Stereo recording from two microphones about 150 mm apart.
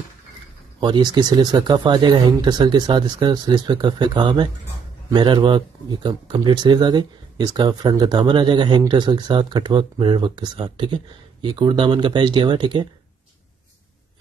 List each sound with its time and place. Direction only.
0.7 s speech: 30° right (ahead or behind)